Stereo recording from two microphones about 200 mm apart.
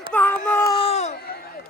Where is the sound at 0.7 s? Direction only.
30° left (ahead or behind).